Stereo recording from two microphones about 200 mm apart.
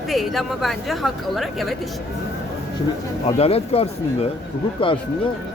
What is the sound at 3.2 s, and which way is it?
Speech, 30° left (ahead or behind).